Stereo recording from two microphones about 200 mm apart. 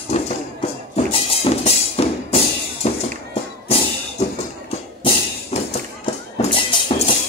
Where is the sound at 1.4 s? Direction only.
30° left (ahead or behind).